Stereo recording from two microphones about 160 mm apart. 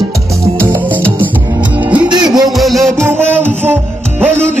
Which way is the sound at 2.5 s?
Centre (ahead or behind).